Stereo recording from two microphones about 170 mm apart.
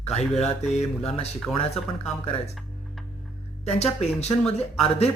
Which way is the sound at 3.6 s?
40° left (ahead or behind).